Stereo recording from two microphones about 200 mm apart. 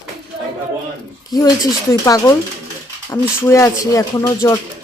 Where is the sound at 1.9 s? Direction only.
15° left (ahead or behind).